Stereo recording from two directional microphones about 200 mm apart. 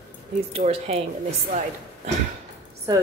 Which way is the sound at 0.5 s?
30° right (ahead or behind).